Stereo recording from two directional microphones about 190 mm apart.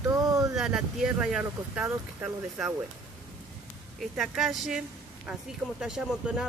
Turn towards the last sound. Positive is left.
turn(degrees=-5)  # may be behind; listen again after turning